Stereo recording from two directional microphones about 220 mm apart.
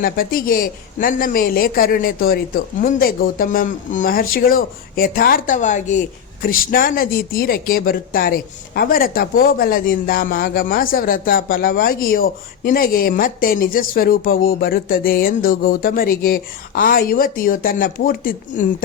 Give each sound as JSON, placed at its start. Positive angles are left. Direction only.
{"t": 0.0, "sound": "a man's voice", "side_deg": 40}